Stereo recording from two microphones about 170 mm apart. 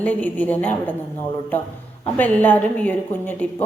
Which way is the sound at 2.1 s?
10° left (ahead or behind).